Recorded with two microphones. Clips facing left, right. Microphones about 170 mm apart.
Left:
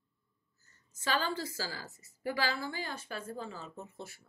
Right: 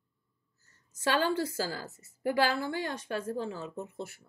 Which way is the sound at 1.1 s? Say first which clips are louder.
Right 6 dB; 60° right (ahead or behind).